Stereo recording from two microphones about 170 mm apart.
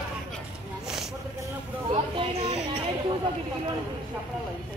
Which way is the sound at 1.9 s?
35° right (ahead or behind).